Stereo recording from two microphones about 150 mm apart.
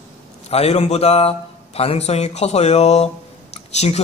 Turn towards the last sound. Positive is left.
turn(degrees=45)  # may be behind; listen again after turning